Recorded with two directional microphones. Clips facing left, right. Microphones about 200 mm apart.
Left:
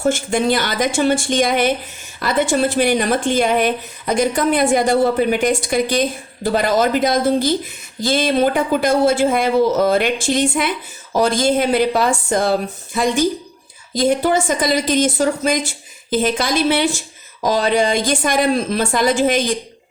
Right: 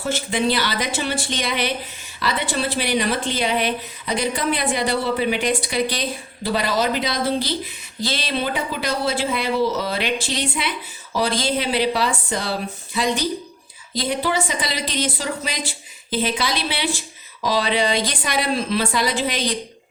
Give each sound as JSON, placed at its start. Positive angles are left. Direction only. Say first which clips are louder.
{"t": 0.0, "sound": "speech", "louder": "left 5 dB", "side_deg": 50}